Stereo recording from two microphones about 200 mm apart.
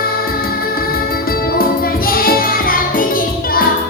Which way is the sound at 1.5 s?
50° left (ahead or behind).